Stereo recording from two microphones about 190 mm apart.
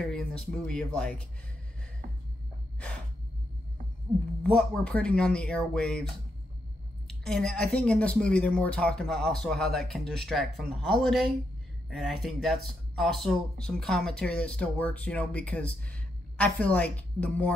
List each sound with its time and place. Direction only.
0.0 s speech: 5° left (ahead or behind)
4.4 s speech: 5° left (ahead or behind)